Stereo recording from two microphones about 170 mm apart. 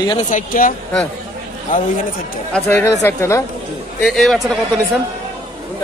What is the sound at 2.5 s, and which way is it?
Speech, 10° left (ahead or behind).